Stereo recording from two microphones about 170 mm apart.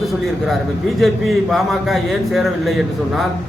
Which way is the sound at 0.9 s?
Centre (ahead or behind).